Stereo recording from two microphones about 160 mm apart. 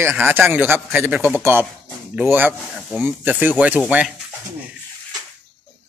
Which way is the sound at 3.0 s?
10° right (ahead or behind).